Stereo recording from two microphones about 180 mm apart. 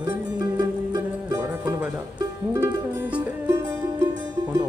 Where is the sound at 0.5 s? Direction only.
20° right (ahead or behind).